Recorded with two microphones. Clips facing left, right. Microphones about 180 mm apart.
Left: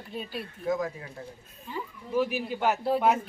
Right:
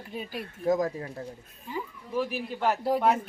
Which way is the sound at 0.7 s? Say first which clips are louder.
Right 4 dB; 40° right (ahead or behind).